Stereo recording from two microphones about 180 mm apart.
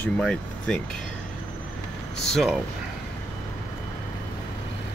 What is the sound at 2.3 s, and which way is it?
Speech, centre (ahead or behind).